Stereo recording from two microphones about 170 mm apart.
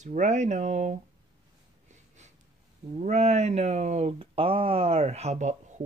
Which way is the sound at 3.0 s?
40° right (ahead or behind).